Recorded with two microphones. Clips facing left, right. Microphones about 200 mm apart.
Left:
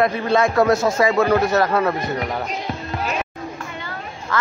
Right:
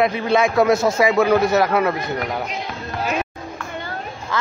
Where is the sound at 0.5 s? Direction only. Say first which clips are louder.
Right 1 dB; centre (ahead or behind).